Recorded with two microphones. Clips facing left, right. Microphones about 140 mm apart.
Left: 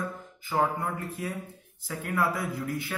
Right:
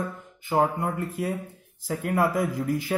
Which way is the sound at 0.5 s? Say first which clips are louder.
Right 4 dB; 25° right (ahead or behind).